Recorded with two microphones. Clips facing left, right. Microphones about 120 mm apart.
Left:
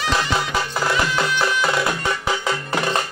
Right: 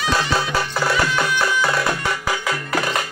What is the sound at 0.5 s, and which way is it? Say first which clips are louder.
Music: right 1 dB; 20° left (ahead or behind).